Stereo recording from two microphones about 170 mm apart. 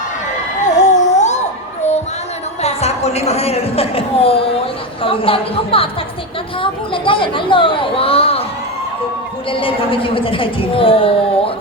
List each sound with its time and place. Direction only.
0.8 s a sound: 45° left (ahead or behind)
2.6 s a woman's voice: 40° left (ahead or behind)
9.5 s a woman's voice: 30° left (ahead or behind)